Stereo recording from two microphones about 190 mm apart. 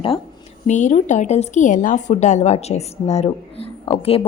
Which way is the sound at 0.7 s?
40° left (ahead or behind).